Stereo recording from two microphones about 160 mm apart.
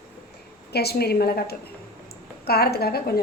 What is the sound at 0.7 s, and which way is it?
A woman's voice, 85° left.